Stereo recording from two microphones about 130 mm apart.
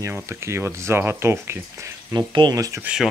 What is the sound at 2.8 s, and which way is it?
Speech, 5° right (ahead or behind).